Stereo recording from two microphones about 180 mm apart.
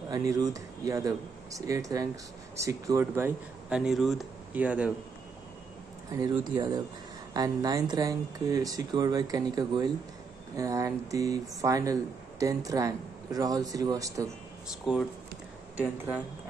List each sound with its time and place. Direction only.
0.1 s speech: 20° right (ahead or behind)
6.5 s speech: 25° right (ahead or behind)
14.9 s speech: 5° right (ahead or behind)